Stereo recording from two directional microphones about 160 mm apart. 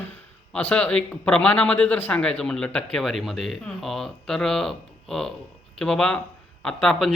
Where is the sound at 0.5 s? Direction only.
5° left (ahead or behind).